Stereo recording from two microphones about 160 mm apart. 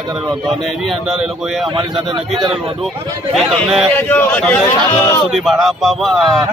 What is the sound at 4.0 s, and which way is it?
A man's voice, 10° left (ahead or behind).